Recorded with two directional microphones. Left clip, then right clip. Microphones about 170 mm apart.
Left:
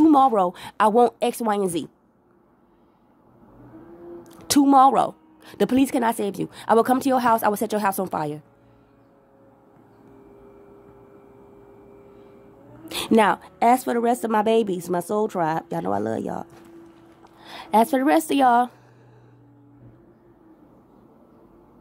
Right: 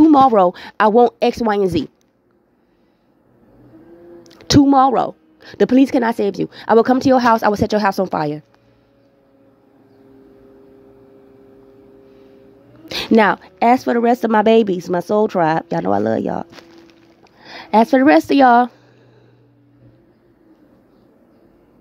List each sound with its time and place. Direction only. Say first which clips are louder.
0.0 s a woman's voice: right 6 dB; 35° right (ahead or behind)
4.2 s a sound: right 7 dB; 30° right (ahead or behind)
4.6 s speech: left 2 dB; 20° right (ahead or behind); by 8.5 s 35° right (ahead or behind)
12.8 s a woman's voice: right 5 dB; 35° right (ahead or behind)